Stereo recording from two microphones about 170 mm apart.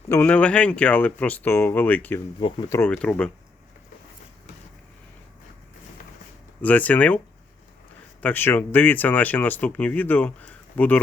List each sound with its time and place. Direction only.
0.1 s speech: 10° left (ahead or behind)
6.6 s speech: 10° left (ahead or behind)
8.2 s speech: 10° left (ahead or behind)